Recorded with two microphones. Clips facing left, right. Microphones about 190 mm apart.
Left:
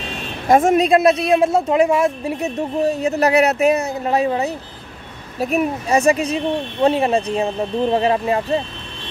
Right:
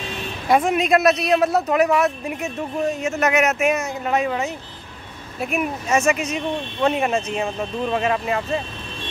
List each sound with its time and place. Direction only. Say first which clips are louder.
0.5 s a woman's voice: left 5 dB; 45° left (ahead or behind)
0.8 s speech: left 3 dB; 30° left (ahead or behind)